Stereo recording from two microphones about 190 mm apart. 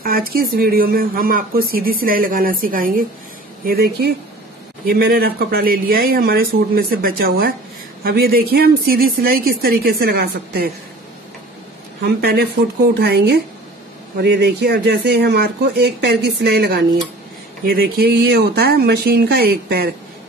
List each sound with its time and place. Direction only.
0.0 s speech: 50° right (ahead or behind)
12.0 s speech: 55° right (ahead or behind)